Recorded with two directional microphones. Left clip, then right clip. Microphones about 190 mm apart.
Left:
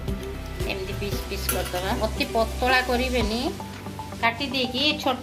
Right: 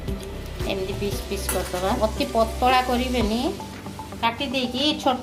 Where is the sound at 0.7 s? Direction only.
35° right (ahead or behind).